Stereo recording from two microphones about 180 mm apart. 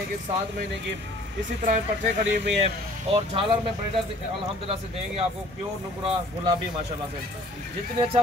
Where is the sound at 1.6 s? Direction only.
45° right (ahead or behind).